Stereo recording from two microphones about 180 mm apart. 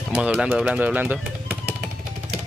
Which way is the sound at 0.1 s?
5° right (ahead or behind).